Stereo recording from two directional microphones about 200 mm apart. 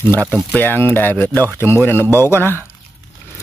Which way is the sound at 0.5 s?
10° left (ahead or behind).